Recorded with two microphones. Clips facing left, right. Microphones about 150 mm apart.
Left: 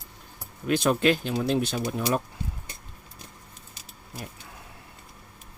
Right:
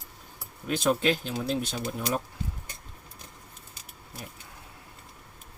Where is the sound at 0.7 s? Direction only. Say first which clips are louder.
Left 3 dB; 65° left (ahead or behind).